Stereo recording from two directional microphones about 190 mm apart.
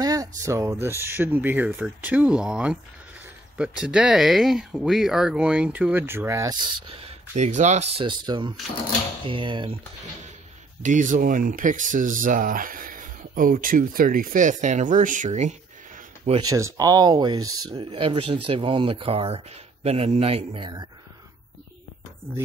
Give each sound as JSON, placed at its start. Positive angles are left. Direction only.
{"t": 0.0, "sound": "speech", "side_deg": -20}
{"t": 10.8, "sound": "speech", "side_deg": -40}
{"t": 16.3, "sound": "speech", "side_deg": -20}